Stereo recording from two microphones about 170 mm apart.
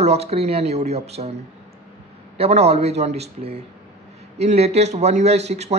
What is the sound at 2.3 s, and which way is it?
Speech, 35° right (ahead or behind).